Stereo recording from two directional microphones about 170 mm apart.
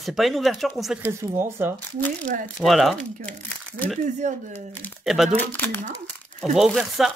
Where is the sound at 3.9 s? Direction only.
40° right (ahead or behind).